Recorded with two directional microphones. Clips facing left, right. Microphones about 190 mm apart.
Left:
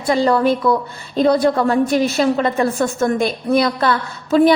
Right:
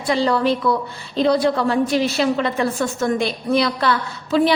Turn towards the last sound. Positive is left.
turn(degrees=45)  # may be behind; listen again after turning